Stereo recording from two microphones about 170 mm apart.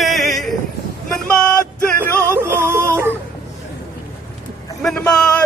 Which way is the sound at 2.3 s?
15° right (ahead or behind).